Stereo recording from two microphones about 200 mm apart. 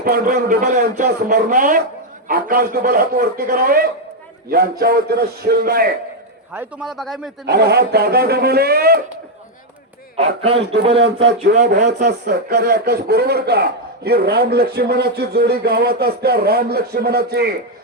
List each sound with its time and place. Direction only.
0.0 s speech: 45° right (ahead or behind)
0.6 s speech: 35° right (ahead or behind)
6.5 s a man's voice: 10° right (ahead or behind)
7.4 s speech: 55° right (ahead or behind)
10.2 s speech: 30° right (ahead or behind)
11.0 s speech: 60° right (ahead or behind)